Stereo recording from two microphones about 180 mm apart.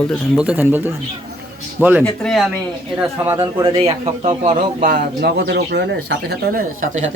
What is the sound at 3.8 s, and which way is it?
Speech, 35° right (ahead or behind).